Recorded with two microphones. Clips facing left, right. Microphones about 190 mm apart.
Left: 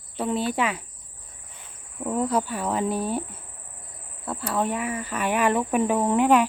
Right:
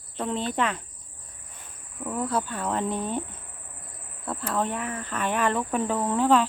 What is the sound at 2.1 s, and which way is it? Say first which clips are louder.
Speech: left 4 dB; 15° left (ahead or behind).